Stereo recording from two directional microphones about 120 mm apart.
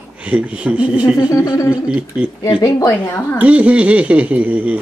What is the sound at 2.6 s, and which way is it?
Speech, 25° left (ahead or behind).